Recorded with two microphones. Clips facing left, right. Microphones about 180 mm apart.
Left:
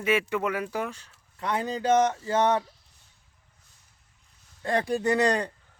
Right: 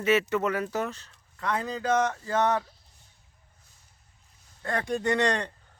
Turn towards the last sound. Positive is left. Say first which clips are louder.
# left 2 dB
turn(degrees=10)  # may be behind; listen again after turning